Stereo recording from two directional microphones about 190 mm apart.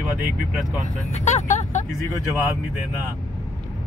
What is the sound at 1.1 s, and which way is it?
Speech, 40° left (ahead or behind).